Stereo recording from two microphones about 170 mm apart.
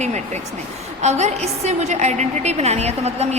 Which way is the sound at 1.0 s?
40° right (ahead or behind).